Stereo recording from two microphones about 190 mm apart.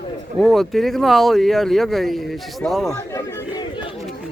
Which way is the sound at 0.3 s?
Centre (ahead or behind).